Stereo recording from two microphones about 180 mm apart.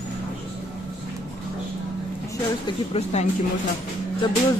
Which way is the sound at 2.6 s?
35° left (ahead or behind).